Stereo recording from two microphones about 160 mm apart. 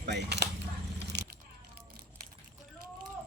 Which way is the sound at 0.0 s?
90° right.